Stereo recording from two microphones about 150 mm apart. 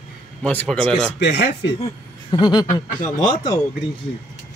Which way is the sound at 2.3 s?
30° left (ahead or behind).